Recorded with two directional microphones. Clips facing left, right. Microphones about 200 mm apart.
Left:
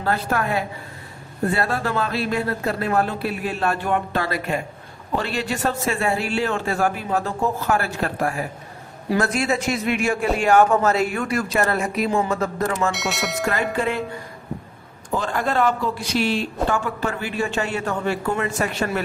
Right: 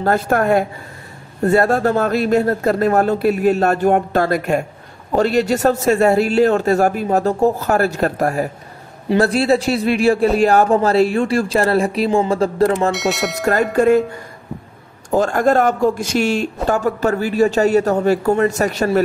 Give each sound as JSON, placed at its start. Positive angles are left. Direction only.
{"t": 0.0, "sound": "speech", "side_deg": -45}
{"t": 12.9, "sound": "speech", "side_deg": 0}
{"t": 13.5, "sound": "speech", "side_deg": -45}
{"t": 15.0, "sound": "speech", "side_deg": -45}